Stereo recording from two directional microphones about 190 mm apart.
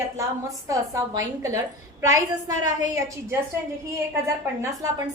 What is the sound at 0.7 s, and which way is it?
A woman's voice, 20° right (ahead or behind).